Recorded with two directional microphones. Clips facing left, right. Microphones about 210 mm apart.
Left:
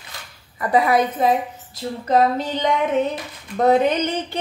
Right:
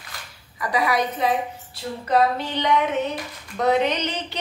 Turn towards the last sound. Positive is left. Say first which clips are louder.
# left 5 dB
turn(degrees=50)  # may be behind; listen again after turning